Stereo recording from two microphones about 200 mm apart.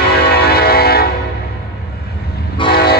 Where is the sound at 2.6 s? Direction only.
25° left (ahead or behind).